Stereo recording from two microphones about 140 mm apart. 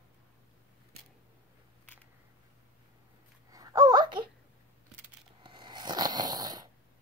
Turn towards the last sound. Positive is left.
turn(degrees=-30)  # may be behind; listen again after turning